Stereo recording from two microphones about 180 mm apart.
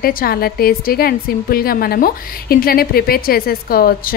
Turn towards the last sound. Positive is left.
turn(degrees=55)  # may be behind; listen again after turning